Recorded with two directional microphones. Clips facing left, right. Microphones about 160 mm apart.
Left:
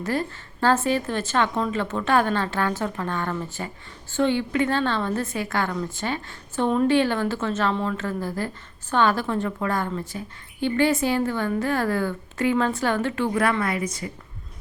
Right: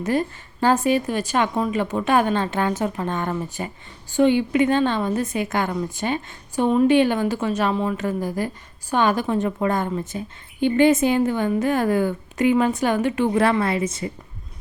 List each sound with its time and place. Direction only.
0.0 s a woman's voice: 20° right (ahead or behind)